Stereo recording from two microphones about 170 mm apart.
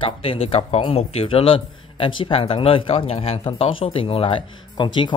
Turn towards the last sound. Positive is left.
turn(degrees=25)  # may be behind; listen again after turning